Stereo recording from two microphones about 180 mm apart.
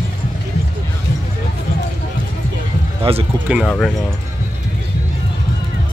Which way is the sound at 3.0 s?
30° right (ahead or behind).